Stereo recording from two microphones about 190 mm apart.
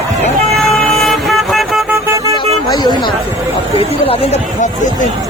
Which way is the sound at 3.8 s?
30° left (ahead or behind).